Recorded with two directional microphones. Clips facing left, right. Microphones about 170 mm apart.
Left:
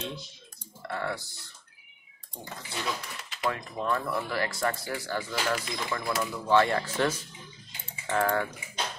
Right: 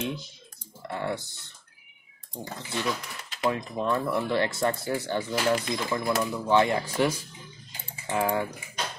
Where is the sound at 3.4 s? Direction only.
20° right (ahead or behind).